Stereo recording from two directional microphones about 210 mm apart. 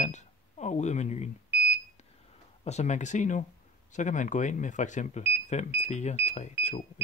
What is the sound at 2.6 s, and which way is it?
Speech, 30° left (ahead or behind).